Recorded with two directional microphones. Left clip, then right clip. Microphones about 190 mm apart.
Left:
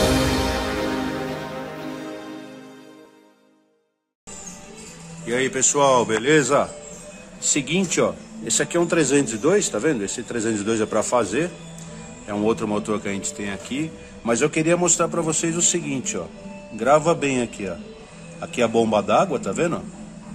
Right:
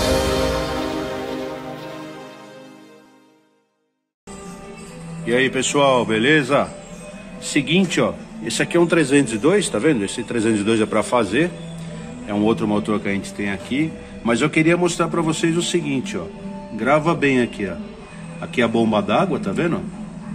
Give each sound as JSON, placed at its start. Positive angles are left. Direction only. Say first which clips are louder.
{"t": 0.0, "sound": "music", "louder": "right 2 dB", "side_deg": -15}
{"t": 5.2, "sound": "speech", "louder": "right 3 dB", "side_deg": 0}